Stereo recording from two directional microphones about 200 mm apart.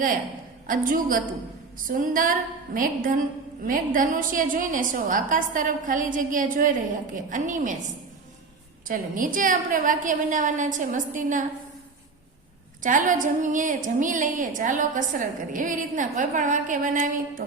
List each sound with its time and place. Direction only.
0.7 s a woman's voice: 45° right (ahead or behind)
8.9 s a woman's voice: 40° right (ahead or behind)
12.8 s a woman's voice: 40° right (ahead or behind)